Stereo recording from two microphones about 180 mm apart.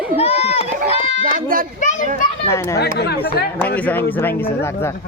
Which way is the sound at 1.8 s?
45° left (ahead or behind).